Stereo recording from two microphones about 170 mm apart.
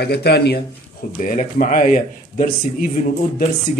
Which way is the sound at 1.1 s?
55° left (ahead or behind).